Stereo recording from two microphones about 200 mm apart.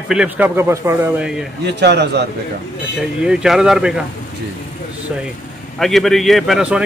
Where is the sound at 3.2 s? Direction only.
5° right (ahead or behind).